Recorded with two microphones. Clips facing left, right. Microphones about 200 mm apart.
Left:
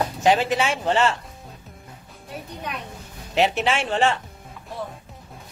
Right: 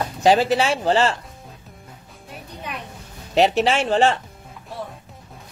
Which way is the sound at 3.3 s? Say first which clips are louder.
Right 4 dB; 35° right (ahead or behind).